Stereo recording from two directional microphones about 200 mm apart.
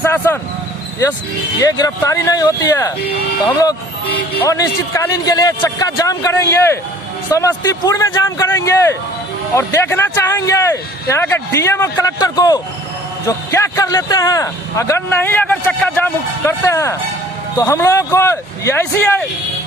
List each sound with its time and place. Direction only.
0.0 s a sound: 10° left (ahead or behind)
1.6 s a man's voice: 20° left (ahead or behind)
4.4 s a man's voice: 15° left (ahead or behind)